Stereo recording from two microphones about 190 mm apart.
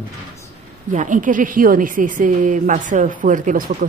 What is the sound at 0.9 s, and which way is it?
A woman's voice, 40° right (ahead or behind).